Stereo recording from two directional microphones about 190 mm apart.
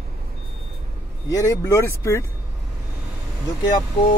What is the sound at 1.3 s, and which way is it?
Speech, 15° left (ahead or behind).